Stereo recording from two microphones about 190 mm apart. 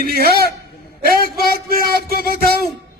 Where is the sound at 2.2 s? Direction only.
50° right (ahead or behind).